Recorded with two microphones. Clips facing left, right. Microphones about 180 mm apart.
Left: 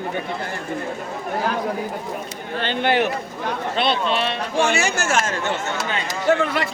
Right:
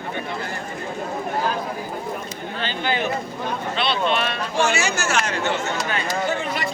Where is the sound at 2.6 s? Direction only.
65° left (ahead or behind).